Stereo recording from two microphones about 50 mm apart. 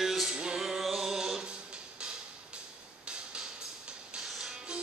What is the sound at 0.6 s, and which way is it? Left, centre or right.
Music, centre.